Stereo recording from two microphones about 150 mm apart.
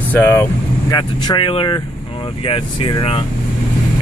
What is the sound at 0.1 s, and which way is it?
Speech, 15° left (ahead or behind).